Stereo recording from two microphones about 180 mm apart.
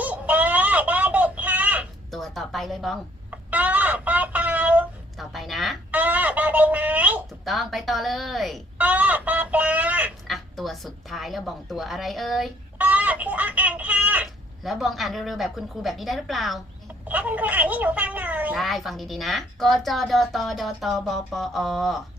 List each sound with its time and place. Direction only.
0.0 s baby cry: 10° right (ahead or behind)
3.5 s a sound: 10° right (ahead or behind)
17.1 s a woman's voice: 10° right (ahead or behind)